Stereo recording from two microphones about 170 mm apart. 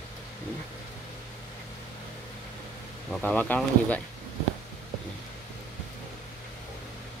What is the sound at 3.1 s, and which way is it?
Speech, 5° left (ahead or behind).